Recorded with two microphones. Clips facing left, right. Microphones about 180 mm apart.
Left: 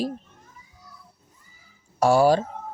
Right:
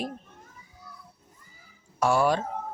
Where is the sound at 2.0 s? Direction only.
35° left (ahead or behind).